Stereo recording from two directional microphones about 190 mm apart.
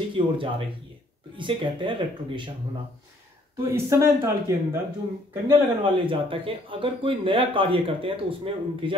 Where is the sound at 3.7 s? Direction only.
15° right (ahead or behind).